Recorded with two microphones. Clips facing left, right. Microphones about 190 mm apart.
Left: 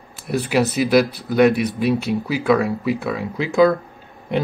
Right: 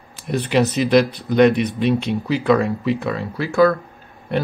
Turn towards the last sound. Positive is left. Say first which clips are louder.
# even
turn(degrees=15)  # may be behind; listen again after turning